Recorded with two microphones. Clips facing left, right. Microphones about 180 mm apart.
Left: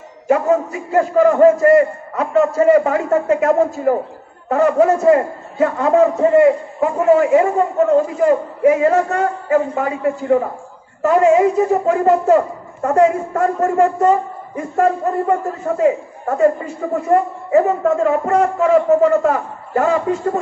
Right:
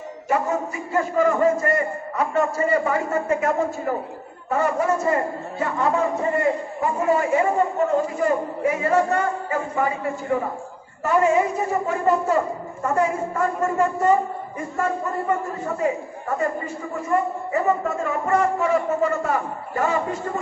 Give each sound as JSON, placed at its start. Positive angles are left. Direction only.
{"t": 0.3, "sound": "a man's voice", "side_deg": 80}
{"t": 11.0, "sound": "a man's voice", "side_deg": 90}
{"t": 16.9, "sound": "a man's voice", "side_deg": 70}